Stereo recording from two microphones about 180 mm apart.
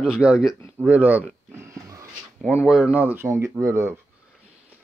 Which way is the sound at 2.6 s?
5° right (ahead or behind).